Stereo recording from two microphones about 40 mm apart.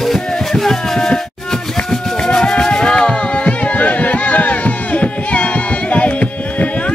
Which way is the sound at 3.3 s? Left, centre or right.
Left.